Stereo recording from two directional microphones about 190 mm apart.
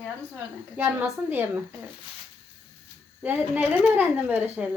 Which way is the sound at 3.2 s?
10° right (ahead or behind).